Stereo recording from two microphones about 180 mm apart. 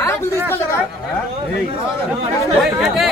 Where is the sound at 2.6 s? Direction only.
Centre (ahead or behind).